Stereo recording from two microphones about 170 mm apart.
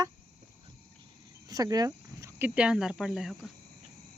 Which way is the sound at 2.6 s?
5° right (ahead or behind).